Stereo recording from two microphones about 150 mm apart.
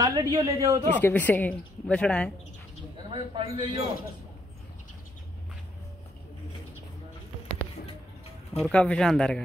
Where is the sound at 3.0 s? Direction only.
35° right (ahead or behind).